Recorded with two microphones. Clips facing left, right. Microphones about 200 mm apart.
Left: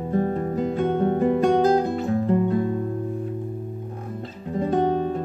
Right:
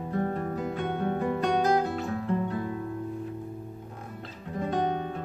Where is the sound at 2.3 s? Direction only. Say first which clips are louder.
Left 8 dB; 30° left (ahead or behind).